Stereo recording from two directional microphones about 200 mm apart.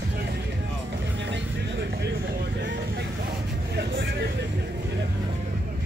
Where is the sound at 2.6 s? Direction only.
60° right (ahead or behind).